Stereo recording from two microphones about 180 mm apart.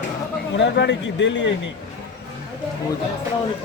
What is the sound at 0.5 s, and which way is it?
Speech, 75° left (ahead or behind).